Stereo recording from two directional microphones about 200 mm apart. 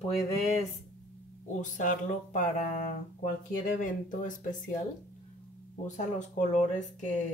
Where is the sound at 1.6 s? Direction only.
40° left (ahead or behind).